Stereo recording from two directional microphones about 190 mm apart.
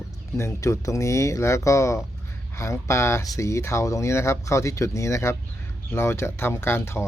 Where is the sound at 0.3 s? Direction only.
15° left (ahead or behind).